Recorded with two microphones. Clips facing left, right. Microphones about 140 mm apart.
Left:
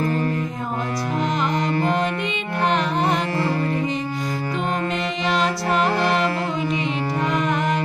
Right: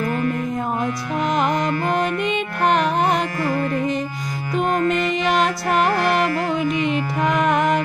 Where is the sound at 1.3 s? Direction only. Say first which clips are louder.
Right 3 dB; 50° right (ahead or behind).